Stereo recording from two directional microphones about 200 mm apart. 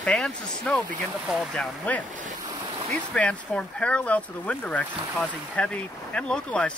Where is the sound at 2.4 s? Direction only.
20° right (ahead or behind).